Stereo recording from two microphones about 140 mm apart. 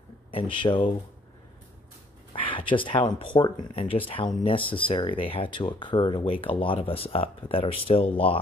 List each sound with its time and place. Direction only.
0.3 s speech: 35° left (ahead or behind)
2.3 s speech: 40° left (ahead or behind)